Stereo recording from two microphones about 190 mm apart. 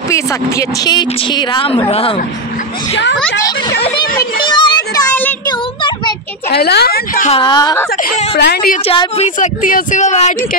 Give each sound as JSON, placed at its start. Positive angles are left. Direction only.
{"t": 0.1, "sound": "a woman's voice", "side_deg": 20}
{"t": 4.0, "sound": "speech", "side_deg": 50}
{"t": 4.5, "sound": "a child's voice", "side_deg": 25}
{"t": 5.5, "sound": "a sound", "side_deg": 25}
{"t": 6.5, "sound": "a woman's voice", "side_deg": 55}
{"t": 7.2, "sound": "a woman's voice", "side_deg": 25}
{"t": 8.0, "sound": "speech", "side_deg": 35}
{"t": 8.4, "sound": "a woman's voice", "side_deg": 55}
{"t": 8.8, "sound": "speech", "side_deg": 30}